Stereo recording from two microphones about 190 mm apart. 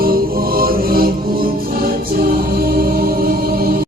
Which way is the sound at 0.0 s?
50° right (ahead or behind).